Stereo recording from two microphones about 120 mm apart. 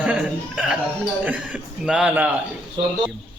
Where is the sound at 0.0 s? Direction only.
10° right (ahead or behind).